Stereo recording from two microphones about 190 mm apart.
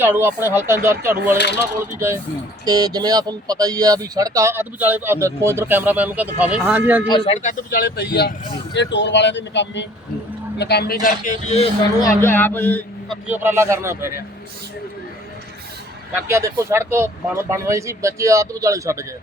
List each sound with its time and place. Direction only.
0.0 s speech: 10° right (ahead or behind)
7.1 s speech: 35° left (ahead or behind); by 9.8 s 70° left (ahead or behind)
10.6 s a man's voice: 60° left (ahead or behind)
11.0 s speech: 40° left (ahead or behind)
12.2 s speech: 10° left (ahead or behind)
13.3 s speech: 15° right (ahead or behind)
16.1 s speech: 15° right (ahead or behind)